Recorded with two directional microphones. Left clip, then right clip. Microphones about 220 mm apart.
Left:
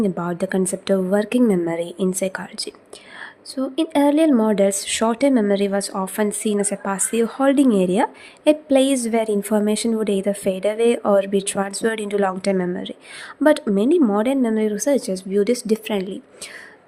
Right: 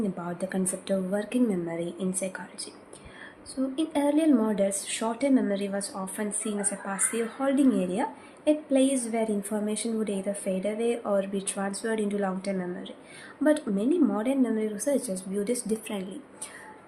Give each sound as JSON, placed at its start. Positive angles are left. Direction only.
{"t": 0.0, "sound": "speech", "side_deg": 50}